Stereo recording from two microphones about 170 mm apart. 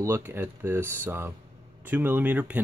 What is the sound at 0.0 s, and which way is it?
Speech, 15° right (ahead or behind).